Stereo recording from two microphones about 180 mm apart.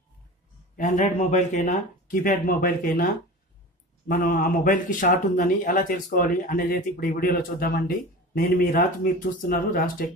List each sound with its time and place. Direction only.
0.7 s speech: 45° left (ahead or behind)
4.1 s speech: 55° left (ahead or behind)